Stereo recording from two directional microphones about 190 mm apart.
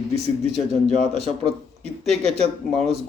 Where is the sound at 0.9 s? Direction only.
35° right (ahead or behind).